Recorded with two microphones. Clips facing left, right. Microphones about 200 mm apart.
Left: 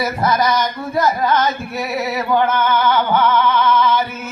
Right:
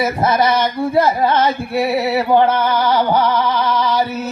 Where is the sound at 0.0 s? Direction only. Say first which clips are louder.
Right 2 dB; 25° right (ahead or behind).